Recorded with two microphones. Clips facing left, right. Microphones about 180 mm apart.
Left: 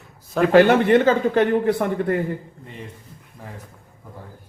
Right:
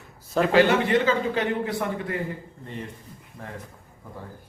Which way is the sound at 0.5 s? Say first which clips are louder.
Left 6 dB; 55° left (ahead or behind).